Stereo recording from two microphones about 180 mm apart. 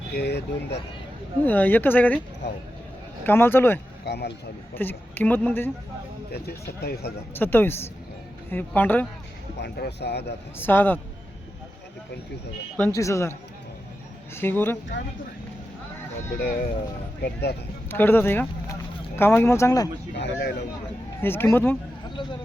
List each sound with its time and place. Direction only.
0.1 s speech: 65° left (ahead or behind)
1.5 s a woman's voice: 10° left (ahead or behind)
3.2 s a woman's voice: 10° left (ahead or behind)
4.0 s speech: 65° left (ahead or behind)
4.7 s a woman's voice: 10° left (ahead or behind)
7.3 s a woman's voice: 10° left (ahead or behind)
9.6 s speech: 60° left (ahead or behind)
10.6 s a woman's voice: 10° left (ahead or behind)
12.7 s a woman's voice: 10° left (ahead or behind)
14.3 s a woman's voice: 10° left (ahead or behind)
16.4 s speech: 55° left (ahead or behind)
17.8 s speech: 10° left (ahead or behind)
20.1 s speech: 70° left (ahead or behind)
21.2 s a woman's voice: 10° left (ahead or behind)